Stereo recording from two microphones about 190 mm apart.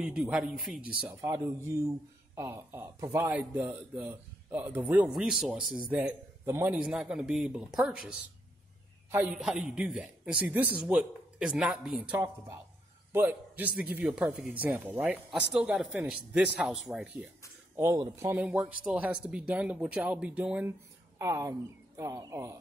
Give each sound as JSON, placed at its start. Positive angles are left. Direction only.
{"t": 0.0, "sound": "speech", "side_deg": 0}
{"t": 1.2, "sound": "speech", "side_deg": -15}
{"t": 9.1, "sound": "a man's voice", "side_deg": -5}
{"t": 17.7, "sound": "speech", "side_deg": -15}